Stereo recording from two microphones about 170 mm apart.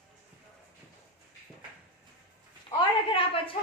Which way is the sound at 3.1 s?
30° left (ahead or behind).